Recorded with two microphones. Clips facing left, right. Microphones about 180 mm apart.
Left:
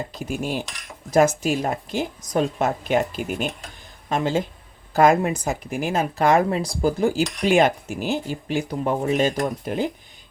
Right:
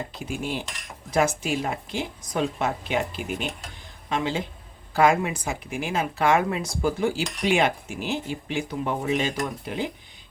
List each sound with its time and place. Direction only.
0.1 s speech: 40° left (ahead or behind)